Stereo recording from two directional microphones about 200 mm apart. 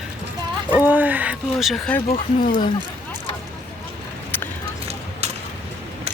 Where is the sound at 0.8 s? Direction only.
10° right (ahead or behind).